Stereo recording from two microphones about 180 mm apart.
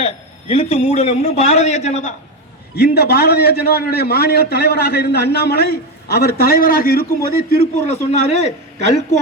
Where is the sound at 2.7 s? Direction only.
65° left (ahead or behind).